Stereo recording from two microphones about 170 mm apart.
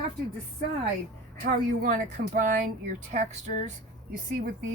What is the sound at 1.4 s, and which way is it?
Speech, 55° right (ahead or behind).